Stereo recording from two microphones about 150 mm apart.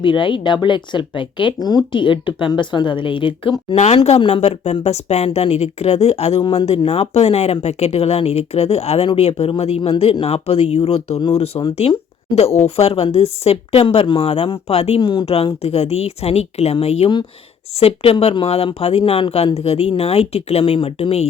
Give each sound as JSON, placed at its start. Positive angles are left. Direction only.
{"t": 0.0, "sound": "speech", "side_deg": 35}
{"t": 3.8, "sound": "speech", "side_deg": 45}
{"t": 6.4, "sound": "speech", "side_deg": 30}
{"t": 6.7, "sound": "speech", "side_deg": 45}